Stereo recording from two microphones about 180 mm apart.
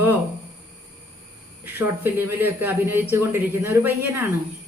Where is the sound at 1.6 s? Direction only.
10° right (ahead or behind).